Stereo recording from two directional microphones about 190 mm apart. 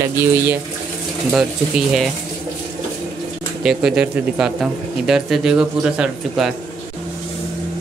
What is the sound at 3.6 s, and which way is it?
Speech, 5° right (ahead or behind).